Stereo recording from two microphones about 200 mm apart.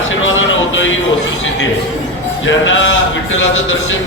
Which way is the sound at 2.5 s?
70° left (ahead or behind).